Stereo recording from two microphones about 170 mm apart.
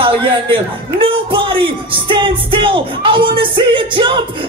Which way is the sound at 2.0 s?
30° right (ahead or behind).